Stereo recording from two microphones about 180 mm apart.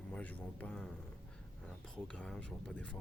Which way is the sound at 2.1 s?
5° left (ahead or behind).